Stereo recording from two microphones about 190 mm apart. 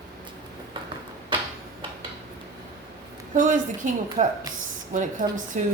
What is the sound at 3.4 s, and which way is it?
A woman's voice, 45° right (ahead or behind).